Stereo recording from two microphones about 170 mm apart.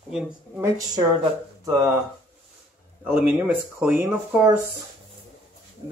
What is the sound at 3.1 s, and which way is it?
Speech, 10° right (ahead or behind).